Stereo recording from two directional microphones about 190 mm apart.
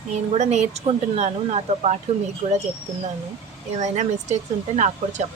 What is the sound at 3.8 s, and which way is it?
Speech, 35° right (ahead or behind).